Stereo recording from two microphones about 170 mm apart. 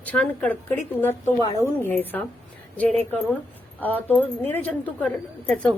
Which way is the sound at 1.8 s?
10° left (ahead or behind).